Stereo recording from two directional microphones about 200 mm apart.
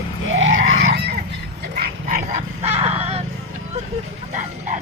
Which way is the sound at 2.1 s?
35° right (ahead or behind).